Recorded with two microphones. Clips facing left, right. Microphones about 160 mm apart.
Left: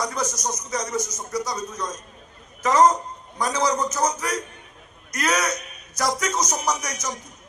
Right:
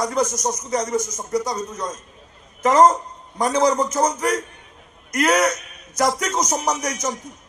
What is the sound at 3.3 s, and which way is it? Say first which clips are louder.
A man's voice: right 5 dB; 50° right (ahead or behind).